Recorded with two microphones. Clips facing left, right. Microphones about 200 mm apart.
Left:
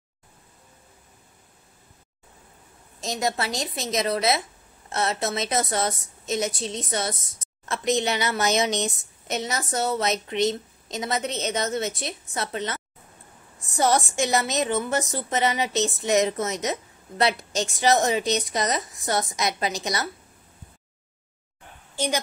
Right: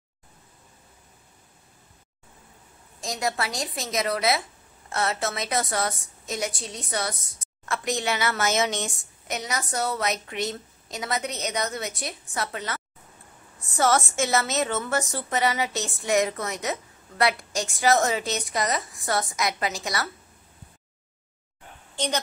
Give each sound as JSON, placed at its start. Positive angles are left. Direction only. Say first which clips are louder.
{"t": 3.0, "sound": "a woman's voice", "louder": "left 2 dB", "side_deg": 25}
{"t": 21.9, "sound": "a woman's voice", "louder": "left 2 dB", "side_deg": 10}